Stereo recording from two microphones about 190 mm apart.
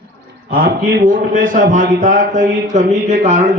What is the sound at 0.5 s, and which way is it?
A man's voice, 50° right (ahead or behind).